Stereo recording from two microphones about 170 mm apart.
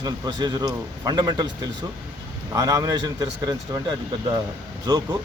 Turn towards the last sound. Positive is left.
turn(degrees=-25)  # may be behind; listen again after turning